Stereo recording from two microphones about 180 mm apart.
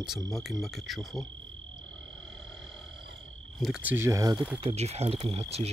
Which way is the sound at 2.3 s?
Centre (ahead or behind).